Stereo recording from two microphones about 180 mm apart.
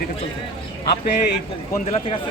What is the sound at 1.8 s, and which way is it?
Speech, 35° left (ahead or behind).